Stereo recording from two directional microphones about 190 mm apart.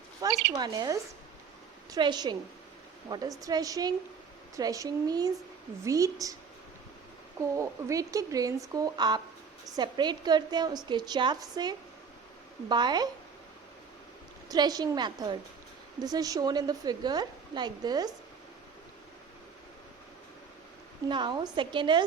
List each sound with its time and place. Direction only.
0.2 s a woman's voice: 20° right (ahead or behind)
7.5 s a woman's voice: 15° right (ahead or behind)
14.5 s a woman's voice: 20° right (ahead or behind)
21.1 s a woman's voice: 25° right (ahead or behind)